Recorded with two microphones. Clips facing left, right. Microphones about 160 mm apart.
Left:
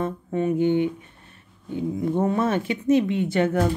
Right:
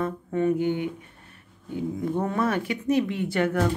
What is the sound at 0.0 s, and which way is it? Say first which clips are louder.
Speech: even; 20° left (ahead or behind).